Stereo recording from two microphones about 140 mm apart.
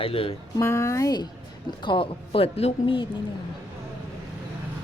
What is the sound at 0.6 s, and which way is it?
Speech, 20° left (ahead or behind).